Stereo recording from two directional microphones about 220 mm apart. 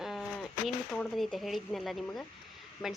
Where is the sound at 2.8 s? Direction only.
20° left (ahead or behind).